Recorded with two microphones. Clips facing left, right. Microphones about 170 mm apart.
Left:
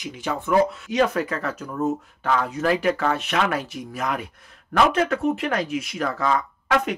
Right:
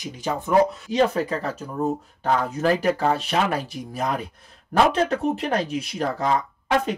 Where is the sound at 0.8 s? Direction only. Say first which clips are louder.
Right 1 dB; 30° right (ahead or behind).